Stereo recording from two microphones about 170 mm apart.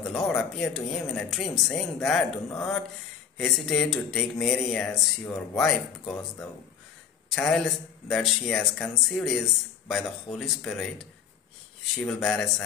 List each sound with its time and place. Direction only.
0.0 s a man's voice: 5° left (ahead or behind)
7.2 s a man's voice: 5° left (ahead or behind)